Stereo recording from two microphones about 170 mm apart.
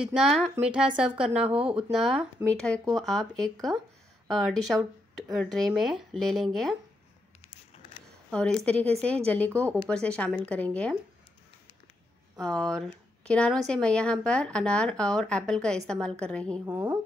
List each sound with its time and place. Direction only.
0.0 s a woman's voice: 5° right (ahead or behind)
7.4 s a sound: 35° left (ahead or behind)
8.3 s a woman's voice: 5° left (ahead or behind)
12.4 s a woman's voice: 5° left (ahead or behind)
16.6 s speech: 10° right (ahead or behind)